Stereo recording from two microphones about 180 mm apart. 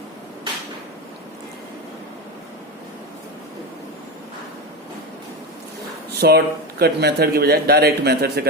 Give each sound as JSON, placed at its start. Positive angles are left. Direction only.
{"t": 6.1, "sound": "speech", "side_deg": -65}